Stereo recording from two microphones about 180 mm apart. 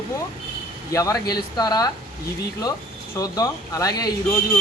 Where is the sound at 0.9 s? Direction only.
20° left (ahead or behind).